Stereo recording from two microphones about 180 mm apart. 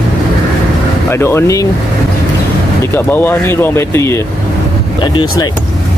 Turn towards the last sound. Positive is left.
turn(degrees=25)  # may be behind; listen again after turning